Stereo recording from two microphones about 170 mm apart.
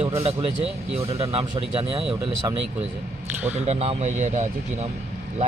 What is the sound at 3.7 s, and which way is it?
Speech, 40° right (ahead or behind).